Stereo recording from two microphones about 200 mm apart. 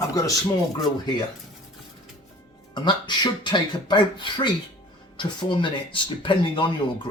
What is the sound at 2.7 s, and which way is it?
Speech, 25° left (ahead or behind).